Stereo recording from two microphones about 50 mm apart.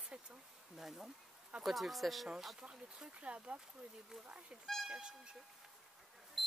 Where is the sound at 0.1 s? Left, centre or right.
Centre.